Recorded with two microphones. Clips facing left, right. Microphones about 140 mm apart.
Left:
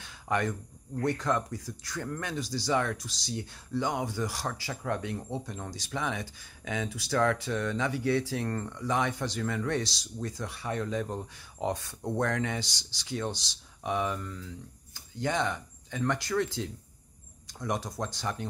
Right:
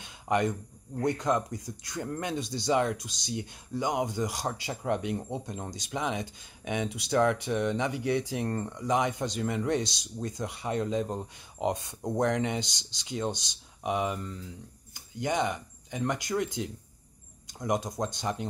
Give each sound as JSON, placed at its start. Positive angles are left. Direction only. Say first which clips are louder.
{"t": 0.0, "sound": "speech", "louder": "right 3 dB", "side_deg": -20}